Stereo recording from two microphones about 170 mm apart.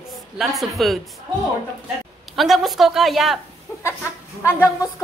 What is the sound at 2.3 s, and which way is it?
A woman's voice, centre (ahead or behind).